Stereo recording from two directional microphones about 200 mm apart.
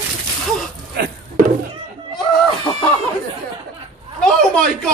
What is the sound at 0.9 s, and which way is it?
Music, 50° right (ahead or behind).